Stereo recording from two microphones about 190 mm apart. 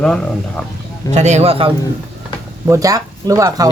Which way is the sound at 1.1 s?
35° right (ahead or behind).